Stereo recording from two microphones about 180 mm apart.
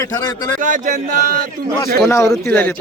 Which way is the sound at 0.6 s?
45° right (ahead or behind).